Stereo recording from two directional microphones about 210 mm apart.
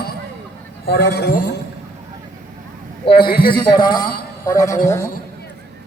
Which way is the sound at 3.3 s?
45° left (ahead or behind).